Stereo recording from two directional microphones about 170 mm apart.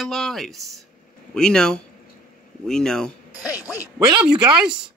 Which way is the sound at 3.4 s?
20° left (ahead or behind).